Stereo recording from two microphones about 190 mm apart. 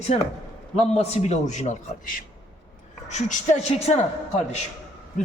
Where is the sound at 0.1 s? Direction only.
35° left (ahead or behind).